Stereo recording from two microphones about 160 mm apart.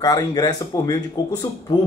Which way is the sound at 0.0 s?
25° left (ahead or behind).